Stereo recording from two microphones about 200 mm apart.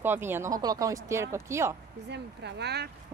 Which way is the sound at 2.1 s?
60° right (ahead or behind).